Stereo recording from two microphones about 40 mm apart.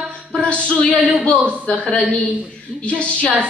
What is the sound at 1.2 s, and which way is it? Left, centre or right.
Speech, left.